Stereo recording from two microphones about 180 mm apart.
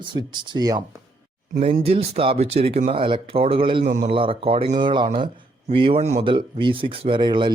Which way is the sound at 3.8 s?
40° right (ahead or behind).